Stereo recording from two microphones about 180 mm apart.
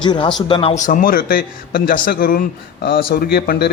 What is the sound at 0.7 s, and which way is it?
Speech, 45° left (ahead or behind).